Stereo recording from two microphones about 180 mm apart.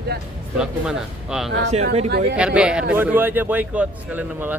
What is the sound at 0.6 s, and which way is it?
Speech, 5° right (ahead or behind).